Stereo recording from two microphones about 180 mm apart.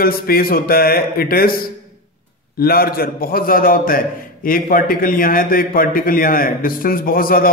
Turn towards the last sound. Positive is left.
turn(degrees=55)  # may be behind; listen again after turning